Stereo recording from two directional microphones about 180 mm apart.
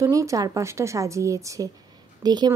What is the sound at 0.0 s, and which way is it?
A woman's voice, 15° right (ahead or behind).